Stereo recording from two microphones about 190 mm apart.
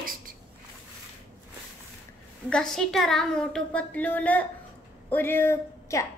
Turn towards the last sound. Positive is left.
turn(degrees=15)  # may be behind; listen again after turning